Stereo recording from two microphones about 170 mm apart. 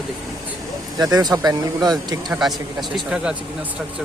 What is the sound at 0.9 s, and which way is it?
Speech, 25° right (ahead or behind).